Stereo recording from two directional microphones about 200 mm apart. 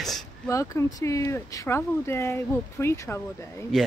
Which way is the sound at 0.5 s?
15° left (ahead or behind).